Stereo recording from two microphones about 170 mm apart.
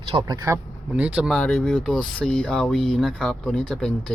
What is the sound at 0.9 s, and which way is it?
Speech, 5° right (ahead or behind).